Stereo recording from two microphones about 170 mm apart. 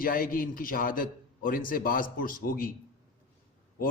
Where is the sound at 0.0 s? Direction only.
55° left (ahead or behind).